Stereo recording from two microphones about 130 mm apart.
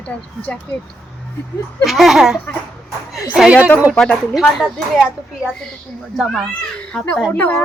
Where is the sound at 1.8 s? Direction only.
Centre (ahead or behind).